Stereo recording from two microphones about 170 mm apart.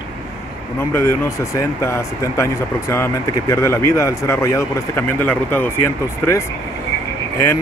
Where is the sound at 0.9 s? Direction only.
15° left (ahead or behind).